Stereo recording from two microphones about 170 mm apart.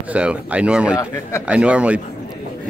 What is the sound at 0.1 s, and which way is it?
Speech, 5° right (ahead or behind).